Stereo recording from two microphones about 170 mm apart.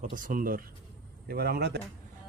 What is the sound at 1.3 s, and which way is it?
Speech, 70° right (ahead or behind).